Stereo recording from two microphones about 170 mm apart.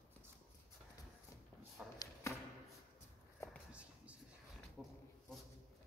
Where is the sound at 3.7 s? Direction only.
10° right (ahead or behind).